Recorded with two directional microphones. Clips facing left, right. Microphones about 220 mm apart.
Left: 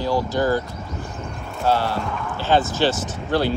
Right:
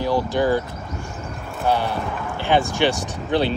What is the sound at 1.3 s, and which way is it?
Vehicle, centre (ahead or behind).